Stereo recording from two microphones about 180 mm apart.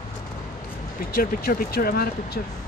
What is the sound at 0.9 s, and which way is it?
Speech, 55° left (ahead or behind).